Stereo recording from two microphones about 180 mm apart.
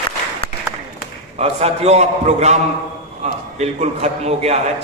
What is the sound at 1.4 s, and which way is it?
A man's voice, 35° right (ahead or behind).